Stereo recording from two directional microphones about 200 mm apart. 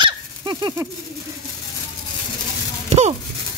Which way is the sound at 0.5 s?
20° right (ahead or behind).